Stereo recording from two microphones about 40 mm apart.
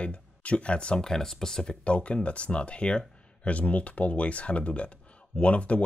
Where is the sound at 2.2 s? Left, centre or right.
Left.